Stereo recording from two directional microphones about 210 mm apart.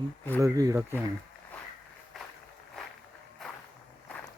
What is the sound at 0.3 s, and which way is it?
Speech, 15° right (ahead or behind).